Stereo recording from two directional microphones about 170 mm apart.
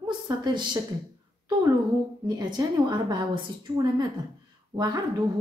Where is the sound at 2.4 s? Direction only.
25° right (ahead or behind).